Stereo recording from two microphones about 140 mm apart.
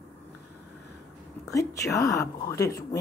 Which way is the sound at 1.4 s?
25° left (ahead or behind).